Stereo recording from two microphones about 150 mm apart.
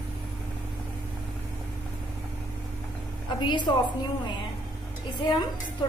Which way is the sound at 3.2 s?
30° left (ahead or behind).